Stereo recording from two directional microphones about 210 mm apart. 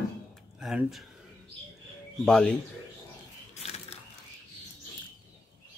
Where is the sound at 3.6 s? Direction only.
30° left (ahead or behind).